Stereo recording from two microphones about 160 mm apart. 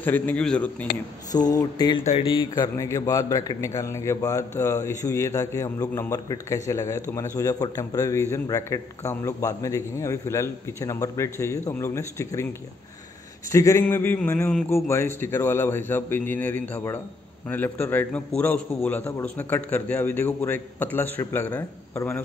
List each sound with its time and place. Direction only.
0.0 s a man's voice: 10° left (ahead or behind)
1.3 s a man's voice: 25° left (ahead or behind)
13.5 s a man's voice: 20° left (ahead or behind)